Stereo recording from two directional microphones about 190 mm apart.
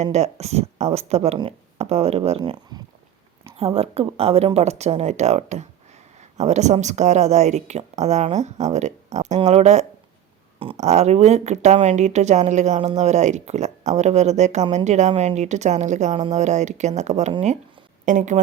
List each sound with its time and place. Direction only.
0.0 s speech: 35° right (ahead or behind)
2.4 s a woman's voice: 20° right (ahead or behind); by 18.3 s 40° right (ahead or behind)